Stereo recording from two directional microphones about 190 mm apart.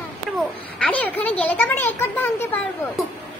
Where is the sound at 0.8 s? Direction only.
5° left (ahead or behind).